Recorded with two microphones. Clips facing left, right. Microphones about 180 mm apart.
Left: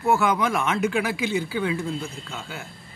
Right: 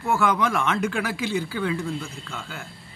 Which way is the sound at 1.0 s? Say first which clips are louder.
Left 1 dB; 20° left (ahead or behind).